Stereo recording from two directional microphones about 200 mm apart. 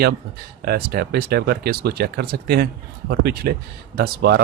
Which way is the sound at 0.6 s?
50° right (ahead or behind).